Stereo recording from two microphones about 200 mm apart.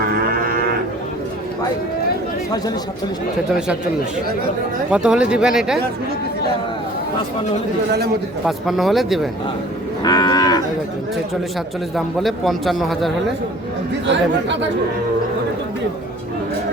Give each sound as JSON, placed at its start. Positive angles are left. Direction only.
{"t": 0.0, "sound": "moo", "side_deg": -45}
{"t": 4.9, "sound": "a man's voice", "side_deg": -5}
{"t": 8.4, "sound": "a man's voice", "side_deg": 0}
{"t": 10.0, "sound": "cattle", "side_deg": 20}
{"t": 11.9, "sound": "a man's voice", "side_deg": 0}
{"t": 14.1, "sound": "speech", "side_deg": -60}